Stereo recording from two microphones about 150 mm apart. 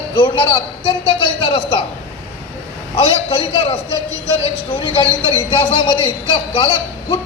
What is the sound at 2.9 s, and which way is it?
A man's voice, 35° left (ahead or behind).